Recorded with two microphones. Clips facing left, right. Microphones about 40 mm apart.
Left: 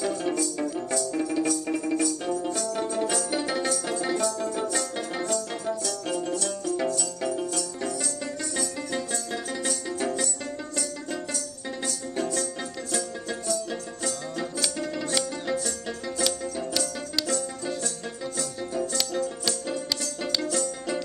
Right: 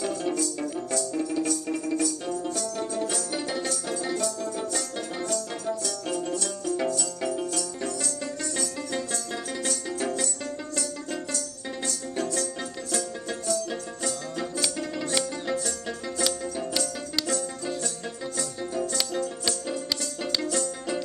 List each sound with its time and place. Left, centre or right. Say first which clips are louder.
0.0 s music: left 1 dB; centre
5.2 s music: left 1 dB; centre
11.3 s music: even; centre
13.5 s music: right 2 dB; centre
18.4 s music: even; centre